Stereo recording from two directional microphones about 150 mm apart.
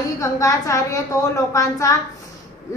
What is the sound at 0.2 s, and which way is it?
A woman's voice, 20° left (ahead or behind).